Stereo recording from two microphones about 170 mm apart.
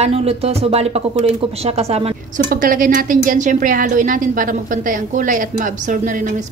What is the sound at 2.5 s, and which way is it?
A woman's voice, 55° right (ahead or behind).